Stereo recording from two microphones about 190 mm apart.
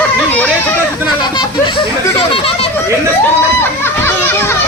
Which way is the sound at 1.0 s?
25° left (ahead or behind).